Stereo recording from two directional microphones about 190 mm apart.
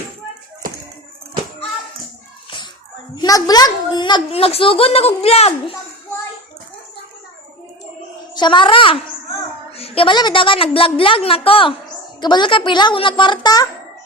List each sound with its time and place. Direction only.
3.2 s a woman's voice: 20° left (ahead or behind)
8.4 s a woman's voice: 25° left (ahead or behind)